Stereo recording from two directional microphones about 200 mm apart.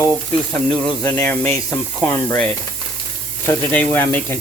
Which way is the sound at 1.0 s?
5° left (ahead or behind).